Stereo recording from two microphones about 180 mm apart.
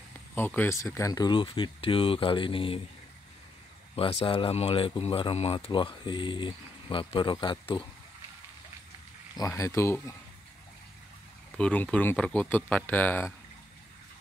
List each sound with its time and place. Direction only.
0.3 s speech: 10° left (ahead or behind); by 2.8 s 30° left (ahead or behind)
3.9 s speech: 30° left (ahead or behind)
9.3 s speech: 20° left (ahead or behind)
11.5 s speech: 5° left (ahead or behind)